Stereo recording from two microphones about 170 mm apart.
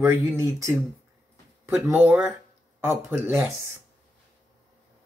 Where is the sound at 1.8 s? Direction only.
10° right (ahead or behind).